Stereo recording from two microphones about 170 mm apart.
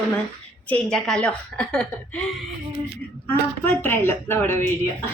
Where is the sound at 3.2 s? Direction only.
15° left (ahead or behind).